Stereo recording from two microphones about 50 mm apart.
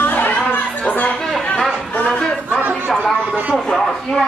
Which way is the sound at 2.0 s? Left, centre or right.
Centre.